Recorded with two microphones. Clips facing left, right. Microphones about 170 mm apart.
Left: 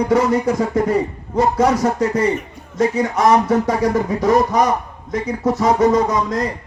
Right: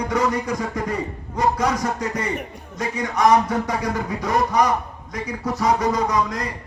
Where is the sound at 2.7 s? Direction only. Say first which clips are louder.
Left 7 dB; 25° left (ahead or behind).